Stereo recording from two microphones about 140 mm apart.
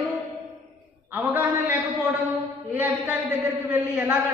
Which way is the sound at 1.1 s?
15° right (ahead or behind).